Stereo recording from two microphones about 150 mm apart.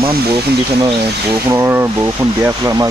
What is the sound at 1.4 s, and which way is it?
Speech, 15° right (ahead or behind).